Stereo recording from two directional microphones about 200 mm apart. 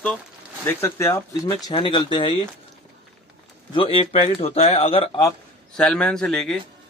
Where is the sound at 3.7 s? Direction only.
25° left (ahead or behind).